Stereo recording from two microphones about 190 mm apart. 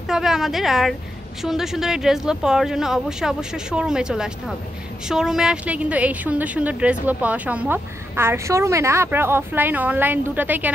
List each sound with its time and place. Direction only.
0.1 s a woman's voice: centre (ahead or behind)